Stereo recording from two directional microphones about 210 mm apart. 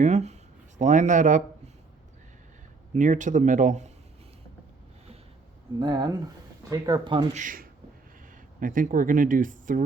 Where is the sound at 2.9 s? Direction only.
35° right (ahead or behind).